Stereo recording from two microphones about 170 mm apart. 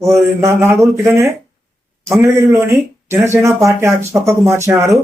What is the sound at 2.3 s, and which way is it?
Speech, 15° right (ahead or behind).